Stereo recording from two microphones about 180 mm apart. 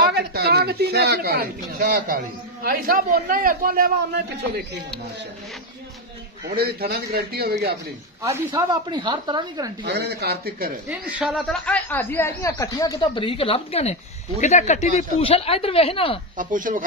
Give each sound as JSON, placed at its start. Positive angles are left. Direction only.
{"t": 0.0, "sound": "speech", "side_deg": -65}
{"t": 6.5, "sound": "speech", "side_deg": -60}
{"t": 8.2, "sound": "speech", "side_deg": -20}
{"t": 9.8, "sound": "speech", "side_deg": -65}
{"t": 10.9, "sound": "speech", "side_deg": -5}
{"t": 11.6, "sound": "speech", "side_deg": 10}
{"t": 16.3, "sound": "speech", "side_deg": -50}